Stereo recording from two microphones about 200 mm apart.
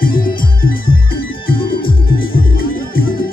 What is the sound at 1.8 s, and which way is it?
Music, 45° left (ahead or behind).